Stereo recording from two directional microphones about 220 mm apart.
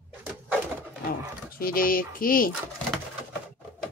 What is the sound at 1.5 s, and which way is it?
Speech, 40° left (ahead or behind).